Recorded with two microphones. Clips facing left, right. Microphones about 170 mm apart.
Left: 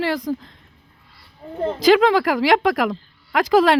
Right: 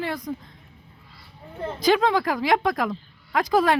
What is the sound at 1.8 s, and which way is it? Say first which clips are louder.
Speech: left 5 dB; 90° left.